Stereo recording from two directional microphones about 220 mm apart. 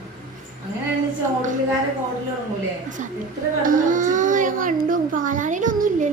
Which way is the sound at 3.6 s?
40° right (ahead or behind).